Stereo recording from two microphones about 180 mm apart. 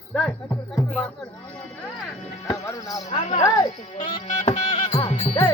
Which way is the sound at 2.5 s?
20° left (ahead or behind).